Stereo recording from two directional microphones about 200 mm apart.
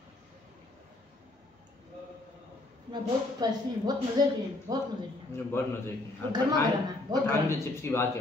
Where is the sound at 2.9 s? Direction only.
20° right (ahead or behind).